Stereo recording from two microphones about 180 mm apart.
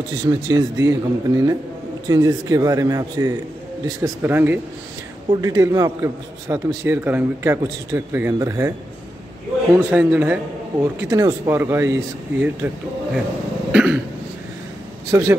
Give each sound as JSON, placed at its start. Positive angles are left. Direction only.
{"t": 0.3, "sound": "a man's voice", "side_deg": -20}
{"t": 9.8, "sound": "a man's voice", "side_deg": -10}
{"t": 13.7, "sound": "cough", "side_deg": -5}
{"t": 15.0, "sound": "speech", "side_deg": -20}